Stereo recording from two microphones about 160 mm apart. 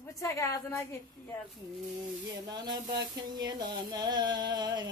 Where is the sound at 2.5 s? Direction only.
25° right (ahead or behind).